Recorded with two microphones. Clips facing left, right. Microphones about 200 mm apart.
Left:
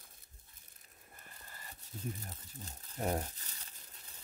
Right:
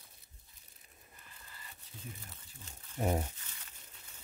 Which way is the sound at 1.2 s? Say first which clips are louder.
Left 2 dB; 45° left (ahead or behind).